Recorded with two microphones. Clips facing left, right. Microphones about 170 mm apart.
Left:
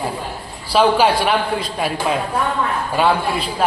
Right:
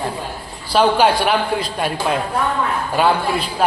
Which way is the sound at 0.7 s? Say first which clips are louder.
Even; centre (ahead or behind).